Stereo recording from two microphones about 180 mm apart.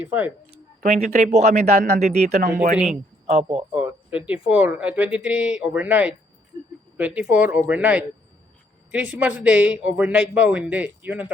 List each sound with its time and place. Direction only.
0.0 s speech: 10° right (ahead or behind)
0.8 s speech: 40° right (ahead or behind)
2.7 s speech: 5° right (ahead or behind)
3.2 s speech: 35° right (ahead or behind)
3.8 s speech: 10° right (ahead or behind)